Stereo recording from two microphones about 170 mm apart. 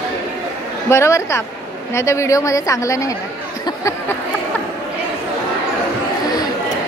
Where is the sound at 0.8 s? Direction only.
15° left (ahead or behind).